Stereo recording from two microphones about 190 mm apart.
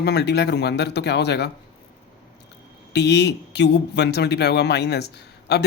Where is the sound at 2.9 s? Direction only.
60° left (ahead or behind).